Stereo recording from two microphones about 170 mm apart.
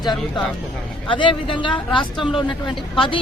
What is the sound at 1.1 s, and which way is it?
Speech, 30° left (ahead or behind).